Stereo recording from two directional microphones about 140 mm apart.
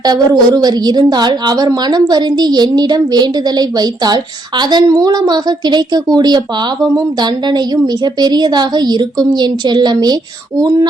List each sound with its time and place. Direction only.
0.0 s a woman's voice: 30° right (ahead or behind)